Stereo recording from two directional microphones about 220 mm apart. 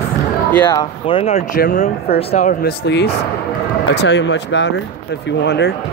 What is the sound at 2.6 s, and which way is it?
Speech, 50° left (ahead or behind).